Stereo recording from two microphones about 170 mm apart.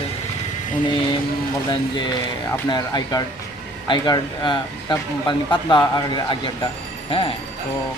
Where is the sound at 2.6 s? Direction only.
25° left (ahead or behind).